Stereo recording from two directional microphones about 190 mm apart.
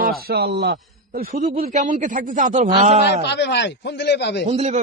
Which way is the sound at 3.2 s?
65° left (ahead or behind).